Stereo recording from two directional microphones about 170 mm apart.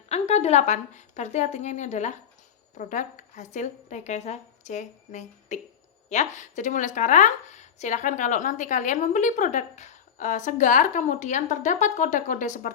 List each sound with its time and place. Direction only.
0.1 s a woman's voice: 40° left (ahead or behind)